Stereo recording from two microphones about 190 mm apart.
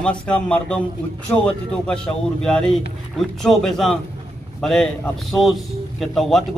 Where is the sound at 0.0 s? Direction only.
5° left (ahead or behind).